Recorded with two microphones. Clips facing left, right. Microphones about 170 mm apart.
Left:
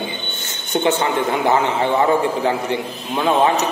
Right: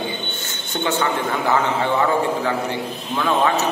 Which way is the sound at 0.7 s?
20° left (ahead or behind).